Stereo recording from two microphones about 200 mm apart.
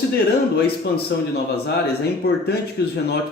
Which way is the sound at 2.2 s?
50° left (ahead or behind).